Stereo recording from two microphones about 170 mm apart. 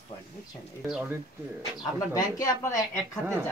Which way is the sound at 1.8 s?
20° left (ahead or behind).